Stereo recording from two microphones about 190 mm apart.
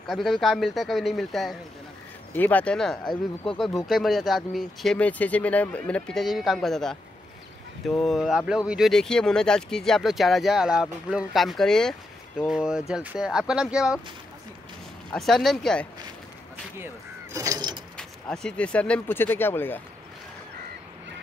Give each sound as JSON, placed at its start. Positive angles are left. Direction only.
{"t": 0.0, "sound": "speech", "side_deg": 0}
{"t": 15.0, "sound": "speech", "side_deg": 0}
{"t": 16.8, "sound": "speech", "side_deg": -15}
{"t": 17.9, "sound": "speech", "side_deg": 5}